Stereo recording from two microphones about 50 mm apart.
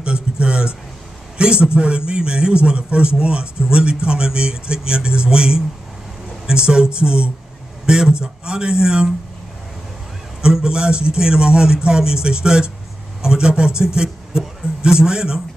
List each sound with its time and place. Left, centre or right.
0.0 s a sound: centre
1.4 s a man's voice: centre
10.4 s speech: centre